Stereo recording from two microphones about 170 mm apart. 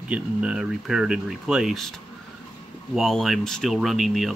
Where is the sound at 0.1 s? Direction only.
5° right (ahead or behind).